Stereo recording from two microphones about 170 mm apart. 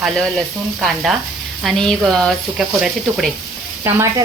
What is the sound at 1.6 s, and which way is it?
Speech, centre (ahead or behind).